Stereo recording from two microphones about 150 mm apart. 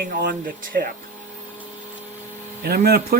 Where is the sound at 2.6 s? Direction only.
90° right.